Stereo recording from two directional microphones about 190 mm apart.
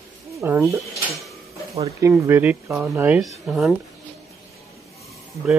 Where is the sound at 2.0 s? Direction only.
15° right (ahead or behind).